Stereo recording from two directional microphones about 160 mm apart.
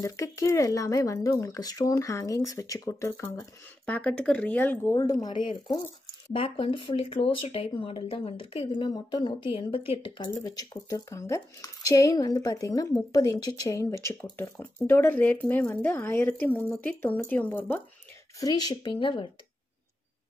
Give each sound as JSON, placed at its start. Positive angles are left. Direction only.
{"t": 0.0, "sound": "speech", "side_deg": 20}
{"t": 4.9, "sound": "a woman's voice", "side_deg": 25}
{"t": 18.4, "sound": "speech", "side_deg": 25}